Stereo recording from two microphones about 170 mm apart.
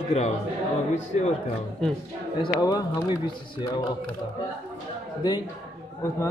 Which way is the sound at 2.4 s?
25° left (ahead or behind).